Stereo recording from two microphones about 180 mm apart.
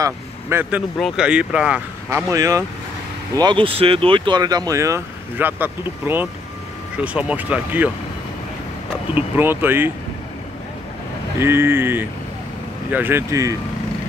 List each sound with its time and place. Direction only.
0.0 s speech: 15° right (ahead or behind)
2.0 s speech: 15° right (ahead or behind)
9.1 s speech: 10° right (ahead or behind)
11.3 s speech: 15° right (ahead or behind)